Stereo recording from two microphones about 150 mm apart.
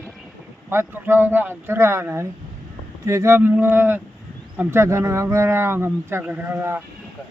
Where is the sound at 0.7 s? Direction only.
15° right (ahead or behind).